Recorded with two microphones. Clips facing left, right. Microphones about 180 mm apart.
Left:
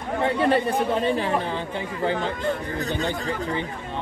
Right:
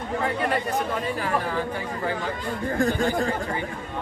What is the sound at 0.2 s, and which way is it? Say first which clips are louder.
Speech: left 6 dB; 30° left (ahead or behind).